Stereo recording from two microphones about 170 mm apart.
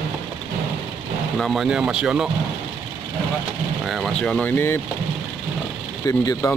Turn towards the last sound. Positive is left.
turn(degrees=20)  # may be behind; listen again after turning